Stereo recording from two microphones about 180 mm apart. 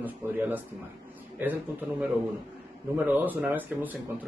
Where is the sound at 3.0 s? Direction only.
10° right (ahead or behind).